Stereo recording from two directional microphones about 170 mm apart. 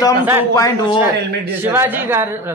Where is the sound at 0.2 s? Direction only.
10° right (ahead or behind).